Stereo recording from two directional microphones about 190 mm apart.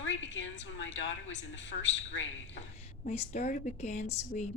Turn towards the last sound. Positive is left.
turn(degrees=40)  # may be behind; listen again after turning